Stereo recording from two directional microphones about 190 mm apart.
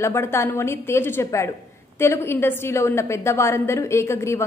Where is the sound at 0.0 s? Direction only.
15° left (ahead or behind).